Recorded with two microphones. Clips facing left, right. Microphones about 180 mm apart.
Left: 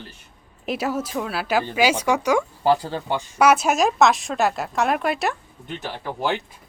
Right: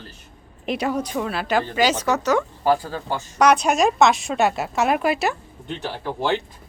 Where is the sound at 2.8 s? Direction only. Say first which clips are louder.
Left 2 dB; 25° left (ahead or behind).